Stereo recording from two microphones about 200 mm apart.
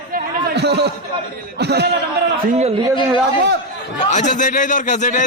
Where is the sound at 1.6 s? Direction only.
55° right (ahead or behind).